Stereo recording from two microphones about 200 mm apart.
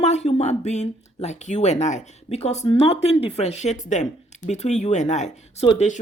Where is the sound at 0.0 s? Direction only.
35° left (ahead or behind).